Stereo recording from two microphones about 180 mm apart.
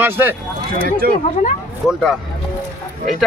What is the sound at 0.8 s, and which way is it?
Speech, 55° right (ahead or behind).